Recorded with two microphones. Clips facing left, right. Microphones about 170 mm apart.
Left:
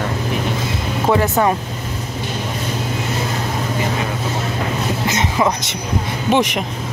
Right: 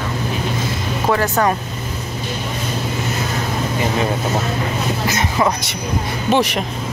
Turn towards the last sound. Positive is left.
turn(degrees=15)  # may be behind; listen again after turning